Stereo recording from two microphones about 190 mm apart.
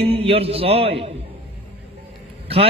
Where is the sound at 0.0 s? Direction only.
30° right (ahead or behind).